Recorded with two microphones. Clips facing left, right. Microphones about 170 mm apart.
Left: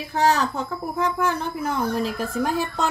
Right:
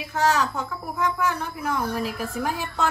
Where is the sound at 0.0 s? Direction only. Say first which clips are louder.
Left 2 dB; 35° left (ahead or behind).